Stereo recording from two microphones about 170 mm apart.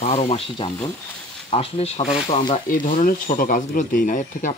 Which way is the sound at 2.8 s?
50° left (ahead or behind).